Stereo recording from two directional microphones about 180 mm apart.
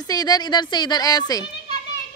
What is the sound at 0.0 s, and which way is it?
A woman's voice, 20° left (ahead or behind).